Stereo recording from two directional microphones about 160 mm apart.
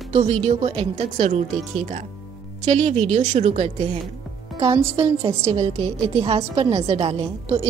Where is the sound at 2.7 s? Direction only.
45° right (ahead or behind).